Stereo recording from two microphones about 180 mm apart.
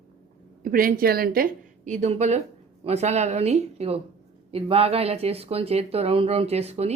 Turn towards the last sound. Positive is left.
turn(degrees=-35)  # may be behind; listen again after turning